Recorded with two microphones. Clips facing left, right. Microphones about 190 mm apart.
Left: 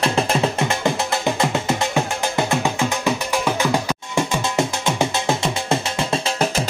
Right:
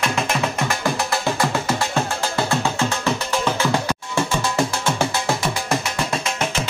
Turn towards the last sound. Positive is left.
turn(degrees=35)  # may be behind; listen again after turning